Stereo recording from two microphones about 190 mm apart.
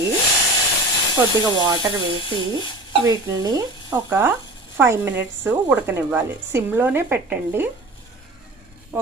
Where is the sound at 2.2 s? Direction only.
25° left (ahead or behind).